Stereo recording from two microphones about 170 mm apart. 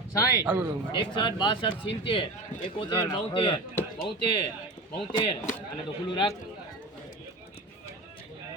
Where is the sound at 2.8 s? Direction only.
30° left (ahead or behind).